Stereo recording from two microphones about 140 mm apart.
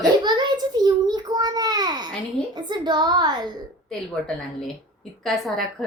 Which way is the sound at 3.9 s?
5° left (ahead or behind).